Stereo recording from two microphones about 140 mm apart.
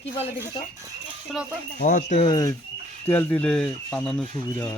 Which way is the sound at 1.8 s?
75° left (ahead or behind).